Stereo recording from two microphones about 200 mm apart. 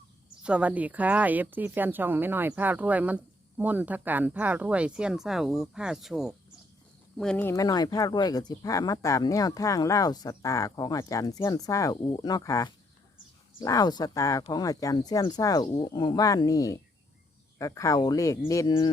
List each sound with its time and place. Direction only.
0.4 s speech: 5° right (ahead or behind)
7.5 s speech: 20° left (ahead or behind)